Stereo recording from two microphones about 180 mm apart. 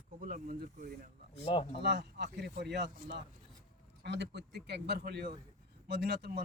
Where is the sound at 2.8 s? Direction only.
50° right (ahead or behind).